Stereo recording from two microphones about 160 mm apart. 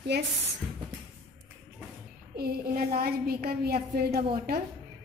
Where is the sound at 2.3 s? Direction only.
70° right (ahead or behind).